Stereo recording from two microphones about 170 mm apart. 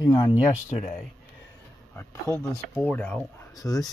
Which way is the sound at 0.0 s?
20° left (ahead or behind).